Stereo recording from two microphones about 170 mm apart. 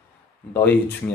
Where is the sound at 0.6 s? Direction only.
10° left (ahead or behind).